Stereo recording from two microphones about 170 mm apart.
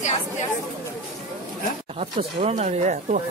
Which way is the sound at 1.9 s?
40° right (ahead or behind).